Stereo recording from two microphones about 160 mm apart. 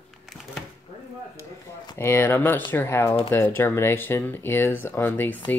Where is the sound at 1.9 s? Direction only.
15° left (ahead or behind).